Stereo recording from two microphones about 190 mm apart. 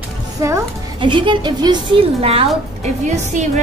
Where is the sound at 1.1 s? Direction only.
25° right (ahead or behind).